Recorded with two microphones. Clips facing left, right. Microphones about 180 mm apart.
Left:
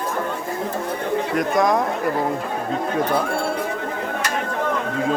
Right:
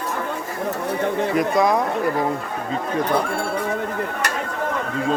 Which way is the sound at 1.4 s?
Centre (ahead or behind).